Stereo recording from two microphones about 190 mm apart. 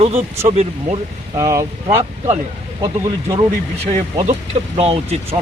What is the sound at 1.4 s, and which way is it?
Speech, 20° right (ahead or behind).